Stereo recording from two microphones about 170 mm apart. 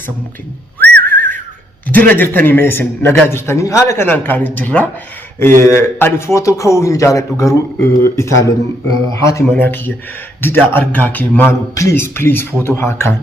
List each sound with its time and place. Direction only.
0.8 s whistling: 10° left (ahead or behind)
1.9 s a man's voice: 10° left (ahead or behind)